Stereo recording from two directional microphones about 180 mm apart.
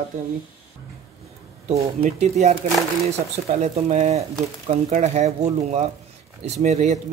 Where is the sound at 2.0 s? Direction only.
40° right (ahead or behind).